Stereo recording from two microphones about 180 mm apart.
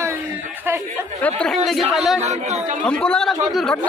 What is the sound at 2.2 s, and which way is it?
Speech, 40° right (ahead or behind).